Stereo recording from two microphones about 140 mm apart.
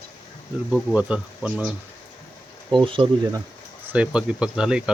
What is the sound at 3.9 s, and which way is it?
Speech, 5° right (ahead or behind).